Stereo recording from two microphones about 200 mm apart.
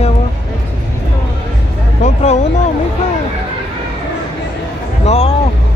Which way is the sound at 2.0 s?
35° left (ahead or behind).